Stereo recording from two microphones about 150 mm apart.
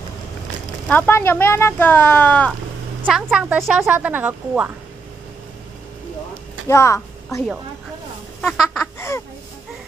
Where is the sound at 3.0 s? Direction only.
5° right (ahead or behind).